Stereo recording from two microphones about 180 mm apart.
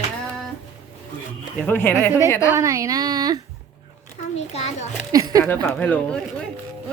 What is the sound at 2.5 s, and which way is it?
Speech, 15° right (ahead or behind).